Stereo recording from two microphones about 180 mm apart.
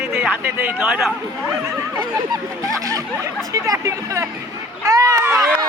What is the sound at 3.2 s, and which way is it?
A man's voice, 20° right (ahead or behind).